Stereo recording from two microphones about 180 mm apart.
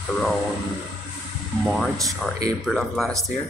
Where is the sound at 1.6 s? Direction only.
Centre (ahead or behind).